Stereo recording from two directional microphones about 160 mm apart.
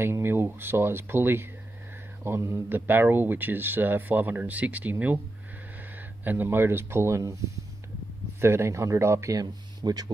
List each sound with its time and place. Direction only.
0.0 s speech: 15° right (ahead or behind)
6.2 s speech: 10° right (ahead or behind)
8.4 s speech: 15° right (ahead or behind)